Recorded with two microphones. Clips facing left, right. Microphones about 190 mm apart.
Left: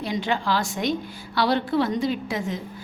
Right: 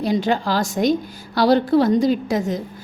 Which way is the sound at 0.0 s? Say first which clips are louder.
Right 6 dB; 40° right (ahead or behind).